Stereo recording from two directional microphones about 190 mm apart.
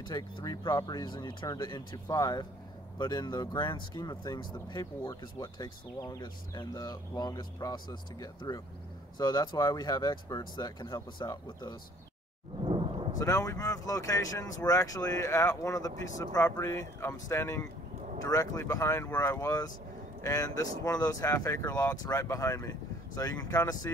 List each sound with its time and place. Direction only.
0.0 s speech: 20° left (ahead or behind)
13.2 s speech: 15° left (ahead or behind)